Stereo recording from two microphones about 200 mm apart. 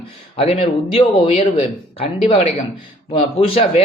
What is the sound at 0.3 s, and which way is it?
A man's voice, 30° left (ahead or behind).